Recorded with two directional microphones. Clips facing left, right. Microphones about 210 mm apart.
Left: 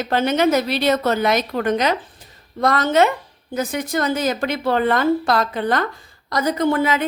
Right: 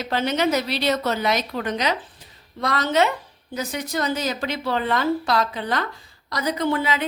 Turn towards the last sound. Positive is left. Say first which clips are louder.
# left 4 dB
turn(degrees=50)  # may be behind; listen again after turning